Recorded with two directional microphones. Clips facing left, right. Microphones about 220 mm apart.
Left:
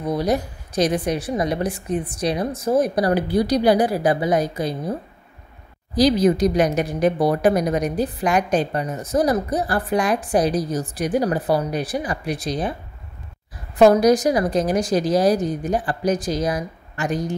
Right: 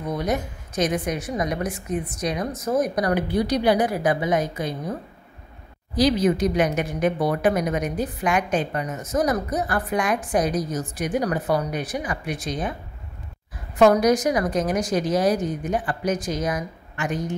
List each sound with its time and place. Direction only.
0.0 s a woman's voice: 35° left (ahead or behind)
5.9 s a woman's voice: 35° left (ahead or behind)
13.7 s a woman's voice: 35° left (ahead or behind)